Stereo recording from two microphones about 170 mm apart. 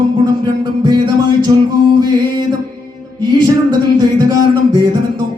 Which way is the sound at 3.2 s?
25° right (ahead or behind).